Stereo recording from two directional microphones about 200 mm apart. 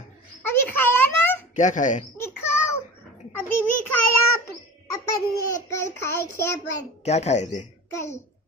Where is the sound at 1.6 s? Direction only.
40° left (ahead or behind).